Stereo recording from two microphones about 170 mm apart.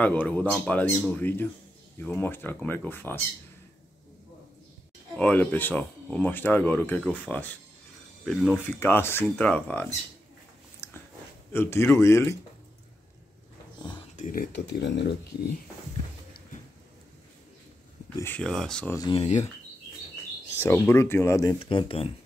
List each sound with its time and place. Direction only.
0.0 s speech: 10° left (ahead or behind)
5.1 s speech: 10° left (ahead or behind)
8.3 s speech: 5° right (ahead or behind)
8.7 s speech: 15° left (ahead or behind)
10.8 s a sound: 15° left (ahead or behind)
11.5 s speech: 15° left (ahead or behind)
14.1 s speech: 50° left (ahead or behind); by 15.1 s 90° left
18.2 s speech: 5° left (ahead or behind)
18.9 s speech: 30° left (ahead or behind)
20.6 s speech: 15° left (ahead or behind)
21.5 s speech: 30° left (ahead or behind)